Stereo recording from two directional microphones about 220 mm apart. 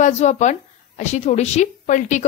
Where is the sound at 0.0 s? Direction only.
35° left (ahead or behind).